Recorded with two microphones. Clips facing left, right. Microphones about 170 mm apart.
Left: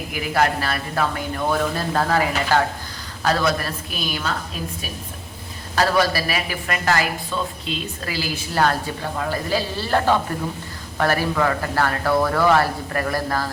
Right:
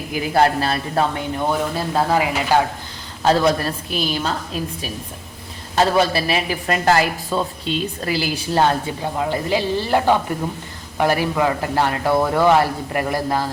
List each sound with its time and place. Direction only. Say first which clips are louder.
0.1 s speech: right 4 dB; 30° right (ahead or behind); by 2.6 s 15° right (ahead or behind)
3.2 s a woman's voice: right 4 dB; 30° right (ahead or behind)
5.7 s a woman's voice: right 2 dB; 25° right (ahead or behind)
8.0 s speech: right 5 dB; 30° right (ahead or behind)